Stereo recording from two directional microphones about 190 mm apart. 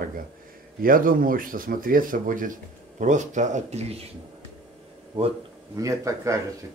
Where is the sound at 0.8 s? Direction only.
45° right (ahead or behind).